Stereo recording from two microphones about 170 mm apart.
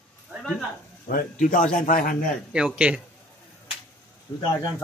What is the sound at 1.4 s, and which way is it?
Speech, 50° left (ahead or behind).